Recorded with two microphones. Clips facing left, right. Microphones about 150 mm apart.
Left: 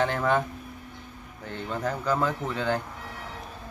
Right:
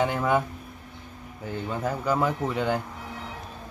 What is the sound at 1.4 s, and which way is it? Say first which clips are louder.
Speech: right 1 dB; 5° right (ahead or behind).